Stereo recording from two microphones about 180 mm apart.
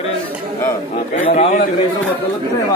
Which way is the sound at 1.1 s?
35° left (ahead or behind).